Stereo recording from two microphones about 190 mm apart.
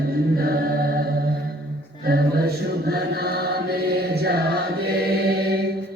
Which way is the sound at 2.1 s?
55° right (ahead or behind).